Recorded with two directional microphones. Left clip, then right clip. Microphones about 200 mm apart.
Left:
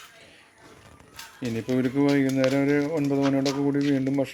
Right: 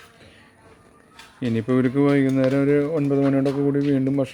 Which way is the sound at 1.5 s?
40° right (ahead or behind).